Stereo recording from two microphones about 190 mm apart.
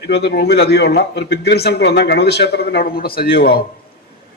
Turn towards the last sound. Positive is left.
turn(degrees=55)  # may be behind; listen again after turning